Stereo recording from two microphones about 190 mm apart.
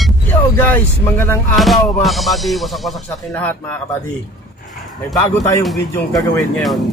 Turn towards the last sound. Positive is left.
turn(degrees=0)  # may be behind; listen again after turning